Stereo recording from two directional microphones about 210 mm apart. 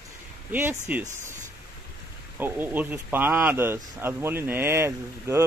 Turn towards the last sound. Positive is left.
turn(degrees=-10)  # may be behind; listen again after turning